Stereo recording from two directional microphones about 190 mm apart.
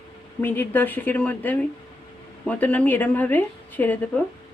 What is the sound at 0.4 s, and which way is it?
Speech, 10° left (ahead or behind).